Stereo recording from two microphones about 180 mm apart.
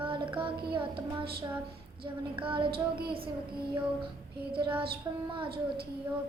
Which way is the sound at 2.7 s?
60° right (ahead or behind).